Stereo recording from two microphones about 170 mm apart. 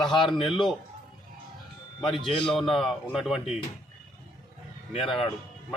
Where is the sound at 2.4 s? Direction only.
Centre (ahead or behind).